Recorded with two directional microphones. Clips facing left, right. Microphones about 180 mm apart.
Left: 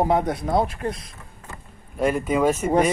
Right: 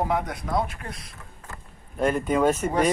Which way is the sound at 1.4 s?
5° left (ahead or behind).